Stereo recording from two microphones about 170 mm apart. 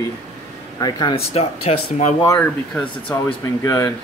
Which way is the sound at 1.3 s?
40° left (ahead or behind).